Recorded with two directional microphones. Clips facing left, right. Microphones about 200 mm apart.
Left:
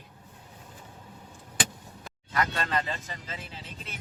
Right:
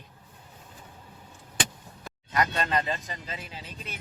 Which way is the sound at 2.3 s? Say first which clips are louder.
Right 2 dB; 20° right (ahead or behind).